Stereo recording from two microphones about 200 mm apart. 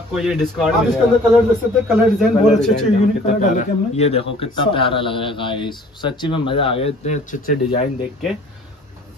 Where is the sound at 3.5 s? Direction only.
30° left (ahead or behind).